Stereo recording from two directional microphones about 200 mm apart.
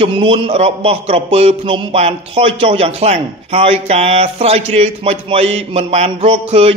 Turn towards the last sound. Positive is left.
turn(degrees=-30)  # may be behind; listen again after turning